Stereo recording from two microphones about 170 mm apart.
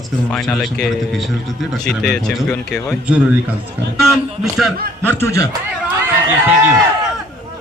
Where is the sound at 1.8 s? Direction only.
5° left (ahead or behind).